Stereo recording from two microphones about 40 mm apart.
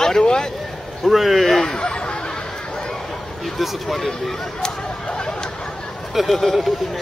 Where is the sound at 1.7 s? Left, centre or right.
Left.